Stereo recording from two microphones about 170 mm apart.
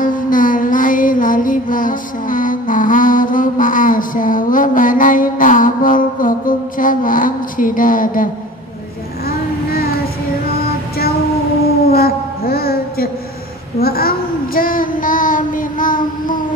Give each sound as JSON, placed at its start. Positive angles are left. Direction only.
{"t": 0.0, "sound": "music", "side_deg": 55}
{"t": 11.8, "sound": "a sound", "side_deg": 65}
{"t": 13.7, "sound": "child singing", "side_deg": 60}